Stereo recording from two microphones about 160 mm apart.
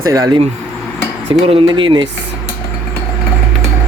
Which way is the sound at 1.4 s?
35° right (ahead or behind).